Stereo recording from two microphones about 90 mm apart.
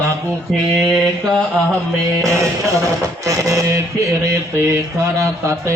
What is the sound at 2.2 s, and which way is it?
Mantra, 35° right (ahead or behind).